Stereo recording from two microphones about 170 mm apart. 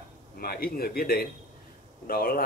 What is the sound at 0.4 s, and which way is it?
Speech, 65° left (ahead or behind).